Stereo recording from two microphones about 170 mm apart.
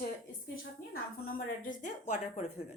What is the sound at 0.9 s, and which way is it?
Speech, 60° left (ahead or behind).